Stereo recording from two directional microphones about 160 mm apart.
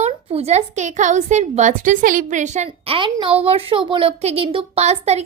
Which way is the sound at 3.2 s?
35° right (ahead or behind).